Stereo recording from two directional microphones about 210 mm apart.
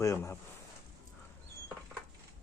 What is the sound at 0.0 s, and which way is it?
Speech, 10° left (ahead or behind).